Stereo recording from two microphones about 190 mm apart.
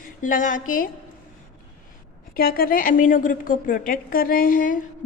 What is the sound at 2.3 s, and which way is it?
A woman's voice, 50° left (ahead or behind).